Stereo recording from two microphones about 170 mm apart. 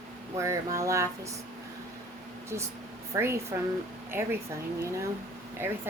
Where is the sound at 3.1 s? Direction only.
15° right (ahead or behind).